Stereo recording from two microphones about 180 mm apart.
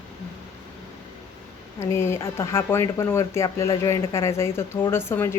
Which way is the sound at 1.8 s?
15° left (ahead or behind).